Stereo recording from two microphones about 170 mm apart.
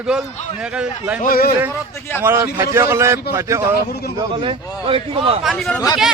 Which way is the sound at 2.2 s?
15° right (ahead or behind).